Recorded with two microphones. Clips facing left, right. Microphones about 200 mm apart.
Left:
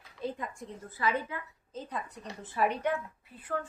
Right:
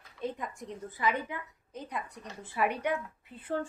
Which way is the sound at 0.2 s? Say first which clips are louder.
Even; 20° right (ahead or behind).